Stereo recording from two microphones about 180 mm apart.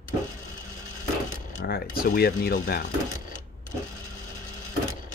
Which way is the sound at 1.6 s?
55° left (ahead or behind).